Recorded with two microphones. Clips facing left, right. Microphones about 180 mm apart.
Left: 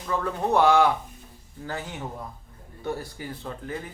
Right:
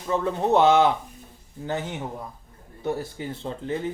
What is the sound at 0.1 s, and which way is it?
Speech, 20° right (ahead or behind).